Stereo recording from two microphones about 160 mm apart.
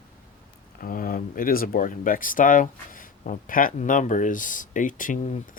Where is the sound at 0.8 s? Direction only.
65° left (ahead or behind).